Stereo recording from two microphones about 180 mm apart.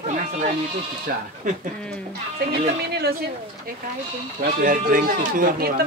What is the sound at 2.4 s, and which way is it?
Speech, 65° right (ahead or behind).